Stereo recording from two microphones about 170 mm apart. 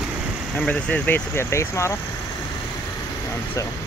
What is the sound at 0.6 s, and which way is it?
Speech, 5° left (ahead or behind).